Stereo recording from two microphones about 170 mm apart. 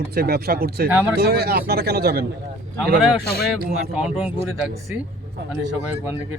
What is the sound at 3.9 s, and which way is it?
Speech, 5° right (ahead or behind).